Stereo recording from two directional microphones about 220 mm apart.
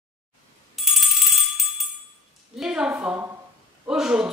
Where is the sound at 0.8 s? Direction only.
Centre (ahead or behind).